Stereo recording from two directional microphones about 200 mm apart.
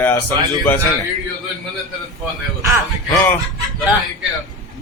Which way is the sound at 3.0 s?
10° left (ahead or behind).